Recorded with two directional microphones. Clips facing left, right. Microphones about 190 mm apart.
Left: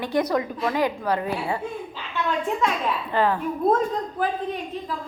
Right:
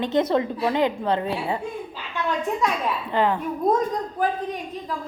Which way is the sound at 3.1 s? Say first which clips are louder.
Even; 20° right (ahead or behind).